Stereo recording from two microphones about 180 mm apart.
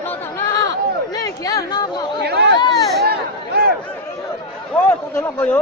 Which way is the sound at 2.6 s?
25° left (ahead or behind).